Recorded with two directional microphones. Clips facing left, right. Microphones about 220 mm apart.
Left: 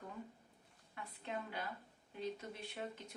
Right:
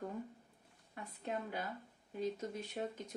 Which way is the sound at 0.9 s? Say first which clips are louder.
Right 3 dB; 45° right (ahead or behind).